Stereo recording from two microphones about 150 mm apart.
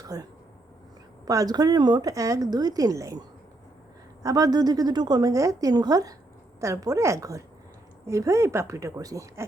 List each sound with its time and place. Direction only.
0.0 s speech: 25° right (ahead or behind)